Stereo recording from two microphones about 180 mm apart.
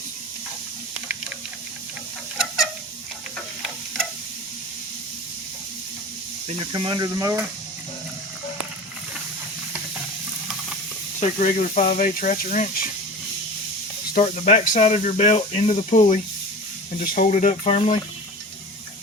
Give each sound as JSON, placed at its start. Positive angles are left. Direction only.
{"t": 6.6, "sound": "speech", "side_deg": -25}
{"t": 11.2, "sound": "speech", "side_deg": 45}
{"t": 14.1, "sound": "speech", "side_deg": 45}